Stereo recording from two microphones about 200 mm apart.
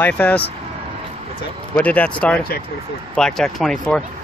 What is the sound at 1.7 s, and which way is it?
Speech, 5° left (ahead or behind).